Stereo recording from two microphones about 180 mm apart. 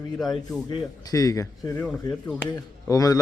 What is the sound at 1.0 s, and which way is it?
A man's voice, 20° left (ahead or behind).